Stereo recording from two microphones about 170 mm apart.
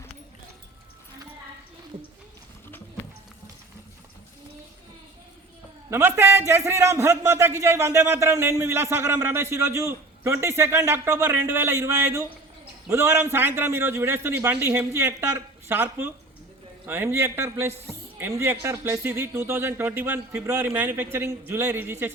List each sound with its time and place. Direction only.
5.9 s a man's voice: 15° right (ahead or behind)